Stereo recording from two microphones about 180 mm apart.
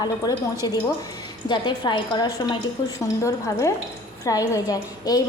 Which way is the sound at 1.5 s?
25° left (ahead or behind).